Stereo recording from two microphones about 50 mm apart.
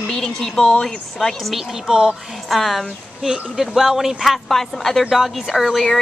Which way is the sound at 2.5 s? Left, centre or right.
Centre.